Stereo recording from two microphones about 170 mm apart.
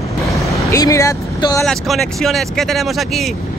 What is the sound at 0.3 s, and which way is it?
Vehicle, 20° left (ahead or behind).